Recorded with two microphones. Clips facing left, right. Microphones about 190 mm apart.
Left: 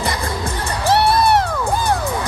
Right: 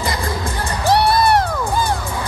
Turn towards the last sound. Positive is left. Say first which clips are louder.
# even
turn(degrees=0)  # may be behind; listen again after turning